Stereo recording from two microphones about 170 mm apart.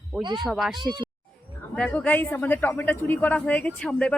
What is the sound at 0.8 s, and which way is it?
Speech, 25° right (ahead or behind).